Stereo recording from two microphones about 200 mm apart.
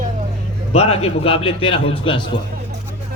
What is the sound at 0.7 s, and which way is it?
A man's voice, 30° left (ahead or behind).